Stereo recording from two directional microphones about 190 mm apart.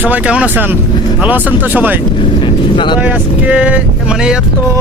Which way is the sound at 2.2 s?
25° left (ahead or behind).